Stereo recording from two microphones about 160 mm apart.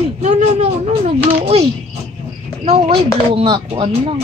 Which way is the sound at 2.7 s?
35° right (ahead or behind).